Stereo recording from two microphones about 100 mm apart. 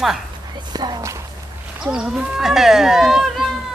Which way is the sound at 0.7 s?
45° right (ahead or behind).